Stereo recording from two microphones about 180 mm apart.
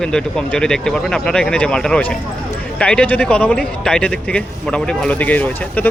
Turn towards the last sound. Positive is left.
turn(degrees=10)  # may be behind; listen again after turning